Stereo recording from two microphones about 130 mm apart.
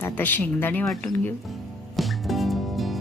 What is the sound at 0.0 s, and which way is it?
Speech, 15° left (ahead or behind).